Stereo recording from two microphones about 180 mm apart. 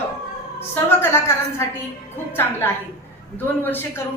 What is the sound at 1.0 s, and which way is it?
Speech, 15° left (ahead or behind).